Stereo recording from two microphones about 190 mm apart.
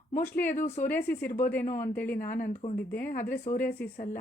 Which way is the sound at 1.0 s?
55° left (ahead or behind).